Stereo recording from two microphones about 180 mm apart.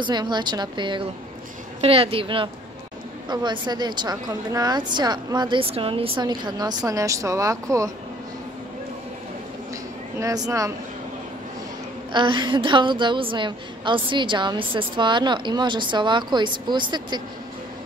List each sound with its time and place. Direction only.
0.0 s a woman's voice: 25° right (ahead or behind)
10.1 s a woman's voice: 20° right (ahead or behind)
12.1 s a woman's voice: 25° right (ahead or behind)